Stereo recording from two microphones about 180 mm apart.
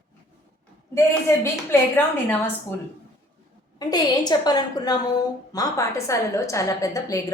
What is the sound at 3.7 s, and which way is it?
A woman's voice, 20° left (ahead or behind).